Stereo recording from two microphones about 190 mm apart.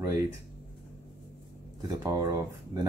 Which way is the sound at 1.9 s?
20° right (ahead or behind).